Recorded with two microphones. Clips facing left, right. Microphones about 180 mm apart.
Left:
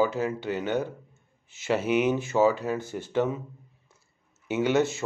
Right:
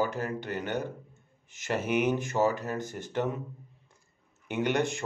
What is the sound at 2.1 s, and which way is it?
Speech, 10° left (ahead or behind).